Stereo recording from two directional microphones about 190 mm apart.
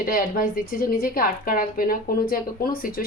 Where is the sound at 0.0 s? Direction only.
50° left (ahead or behind).